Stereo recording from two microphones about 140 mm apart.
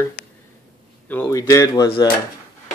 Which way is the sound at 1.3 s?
25° left (ahead or behind).